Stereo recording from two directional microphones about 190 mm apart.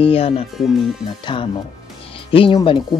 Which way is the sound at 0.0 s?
30° left (ahead or behind).